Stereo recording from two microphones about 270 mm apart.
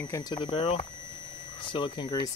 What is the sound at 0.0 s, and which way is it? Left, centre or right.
Speech, centre.